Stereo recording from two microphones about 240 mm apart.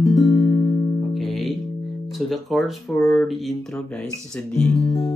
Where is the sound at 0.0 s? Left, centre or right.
Centre.